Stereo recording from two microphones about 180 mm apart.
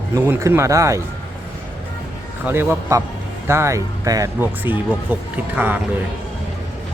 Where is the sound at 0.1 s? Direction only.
15° right (ahead or behind).